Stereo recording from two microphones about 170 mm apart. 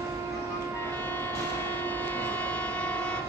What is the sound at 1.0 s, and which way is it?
Train, 10° left (ahead or behind).